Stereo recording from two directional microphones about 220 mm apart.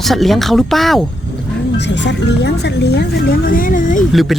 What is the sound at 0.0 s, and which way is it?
Speech, centre (ahead or behind).